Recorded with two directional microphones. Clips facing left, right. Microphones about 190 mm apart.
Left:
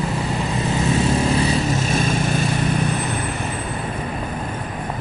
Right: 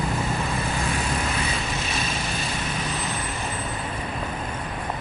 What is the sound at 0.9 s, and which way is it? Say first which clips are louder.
Vehicle: left 9 dB; 35° left (ahead or behind).